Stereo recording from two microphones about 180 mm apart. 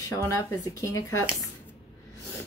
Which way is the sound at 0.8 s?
20° left (ahead or behind).